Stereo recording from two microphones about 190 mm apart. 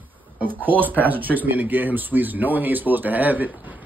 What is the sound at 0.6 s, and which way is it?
Speech, 10° right (ahead or behind).